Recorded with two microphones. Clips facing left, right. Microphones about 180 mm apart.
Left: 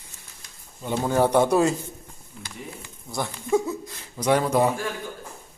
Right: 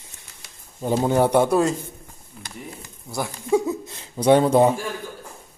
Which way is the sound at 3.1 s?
10° right (ahead or behind).